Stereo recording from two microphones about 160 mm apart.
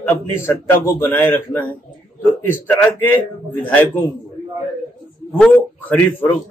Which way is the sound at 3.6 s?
10° left (ahead or behind).